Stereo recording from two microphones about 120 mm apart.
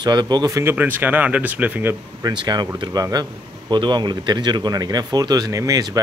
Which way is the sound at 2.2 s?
35° right (ahead or behind).